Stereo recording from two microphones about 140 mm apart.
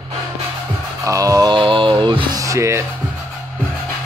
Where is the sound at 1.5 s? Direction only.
35° right (ahead or behind).